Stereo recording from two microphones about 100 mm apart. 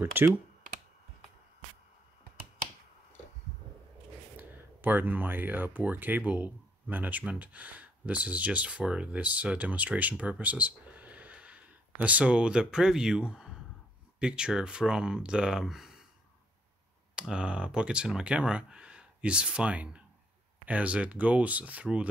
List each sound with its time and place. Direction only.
0.0 s speech: 20° right (ahead or behind)
4.4 s speech: 20° right (ahead or behind); by 16.0 s 5° right (ahead or behind)
17.1 s speech: 10° right (ahead or behind)